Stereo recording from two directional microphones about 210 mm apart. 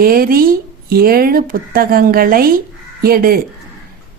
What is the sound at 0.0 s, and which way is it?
A woman's voice, 45° right (ahead or behind).